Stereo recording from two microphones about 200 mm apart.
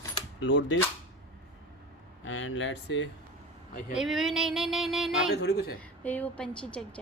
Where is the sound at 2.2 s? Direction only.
70° left (ahead or behind).